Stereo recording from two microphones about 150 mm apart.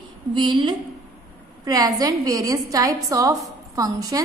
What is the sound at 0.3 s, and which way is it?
A woman's voice, 35° right (ahead or behind).